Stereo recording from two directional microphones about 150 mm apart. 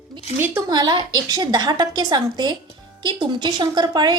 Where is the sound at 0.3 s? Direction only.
15° right (ahead or behind).